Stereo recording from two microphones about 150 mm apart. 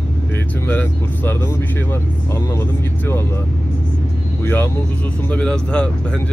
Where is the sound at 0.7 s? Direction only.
10° left (ahead or behind).